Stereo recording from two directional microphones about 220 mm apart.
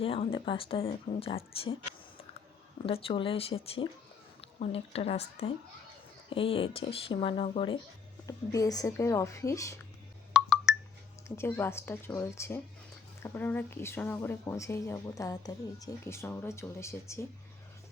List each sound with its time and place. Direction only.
0.0 s speech: 25° left (ahead or behind)
8.3 s speech: 15° left (ahead or behind)
10.3 s a sound: centre (ahead or behind)
11.3 s speech: 10° left (ahead or behind)